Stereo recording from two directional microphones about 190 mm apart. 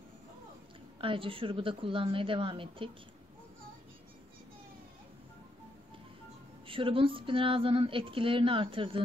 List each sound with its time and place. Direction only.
1.0 s speech: 25° right (ahead or behind)
6.7 s speech: 30° right (ahead or behind)